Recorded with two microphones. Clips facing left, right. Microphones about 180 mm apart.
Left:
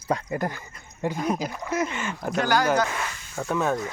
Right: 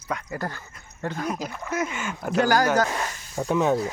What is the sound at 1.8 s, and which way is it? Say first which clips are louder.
Speech: even; 5° right (ahead or behind).